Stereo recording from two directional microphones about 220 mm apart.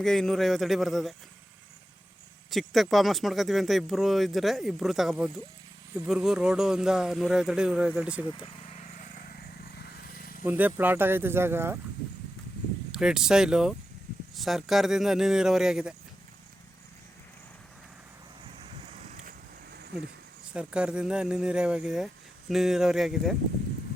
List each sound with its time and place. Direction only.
0.0 s speech: centre (ahead or behind)
2.5 s speech: centre (ahead or behind)
8.6 s vehicle: 35° left (ahead or behind)
10.4 s speech: 10° right (ahead or behind)
12.9 s speech: 5° right (ahead or behind)
18.6 s vehicle: 30° right (ahead or behind)
20.5 s speech: 5° right (ahead or behind)